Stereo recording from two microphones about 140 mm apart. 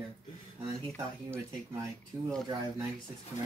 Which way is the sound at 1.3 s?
25° right (ahead or behind).